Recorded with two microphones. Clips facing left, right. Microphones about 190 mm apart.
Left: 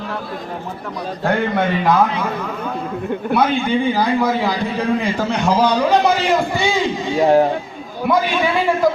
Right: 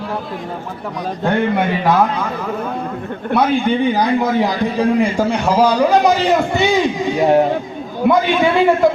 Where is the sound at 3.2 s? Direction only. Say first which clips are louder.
Right 2 dB; 5° left (ahead or behind).